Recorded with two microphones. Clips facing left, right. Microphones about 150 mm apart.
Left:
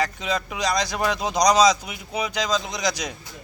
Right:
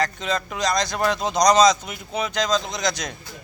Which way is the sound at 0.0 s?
10° left (ahead or behind).